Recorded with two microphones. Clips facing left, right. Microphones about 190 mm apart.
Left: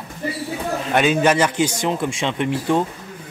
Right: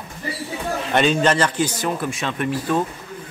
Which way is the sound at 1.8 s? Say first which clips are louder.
Left 2 dB; 20° left (ahead or behind).